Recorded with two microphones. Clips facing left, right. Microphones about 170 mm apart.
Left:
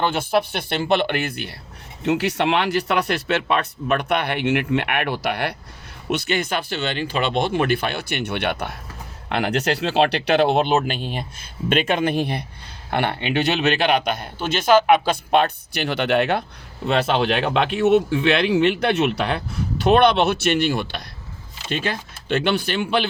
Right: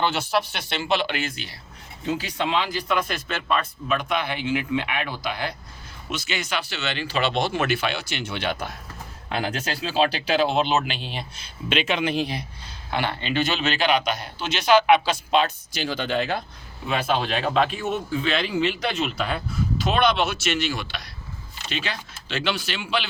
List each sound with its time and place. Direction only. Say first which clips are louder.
0.0 s a man's voice: left 3 dB; 50° left (ahead or behind)
2.0 s a man's voice: left 6 dB; 75° left (ahead or behind); by 23.0 s 55° left (ahead or behind)